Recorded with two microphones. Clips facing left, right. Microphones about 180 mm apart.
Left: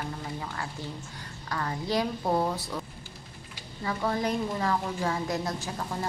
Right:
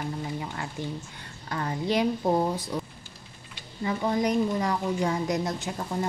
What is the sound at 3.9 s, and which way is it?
A woman's voice, 20° right (ahead or behind).